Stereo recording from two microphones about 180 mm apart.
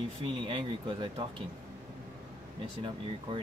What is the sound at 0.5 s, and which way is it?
Speech, 25° right (ahead or behind).